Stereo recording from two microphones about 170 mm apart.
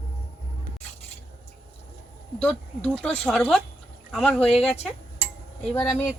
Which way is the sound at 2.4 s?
5° left (ahead or behind).